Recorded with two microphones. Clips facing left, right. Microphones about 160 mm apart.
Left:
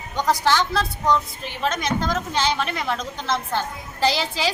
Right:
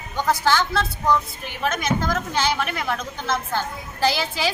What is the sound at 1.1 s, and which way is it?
Speech, 25° left (ahead or behind).